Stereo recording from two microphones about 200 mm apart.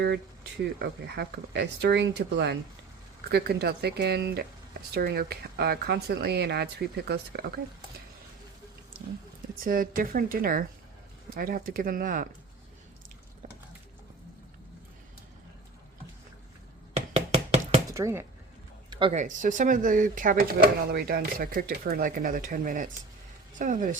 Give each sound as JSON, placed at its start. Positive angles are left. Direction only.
{"t": 0.0, "sound": "speech", "side_deg": -60}
{"t": 9.6, "sound": "speech", "side_deg": -45}
{"t": 17.2, "sound": "a sound", "side_deg": -30}
{"t": 17.8, "sound": "speech", "side_deg": -15}
{"t": 18.9, "sound": "a sound", "side_deg": -25}
{"t": 19.2, "sound": "speech", "side_deg": -40}